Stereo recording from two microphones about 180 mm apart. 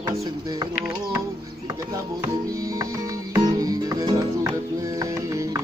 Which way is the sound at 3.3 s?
20° right (ahead or behind).